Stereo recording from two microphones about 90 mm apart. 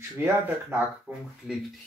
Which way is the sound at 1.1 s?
15° right (ahead or behind).